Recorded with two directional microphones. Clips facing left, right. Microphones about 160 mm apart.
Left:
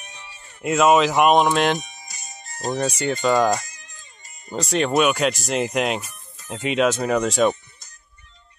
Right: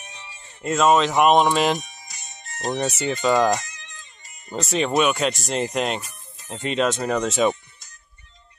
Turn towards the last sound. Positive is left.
turn(degrees=0)  # may be behind; listen again after turning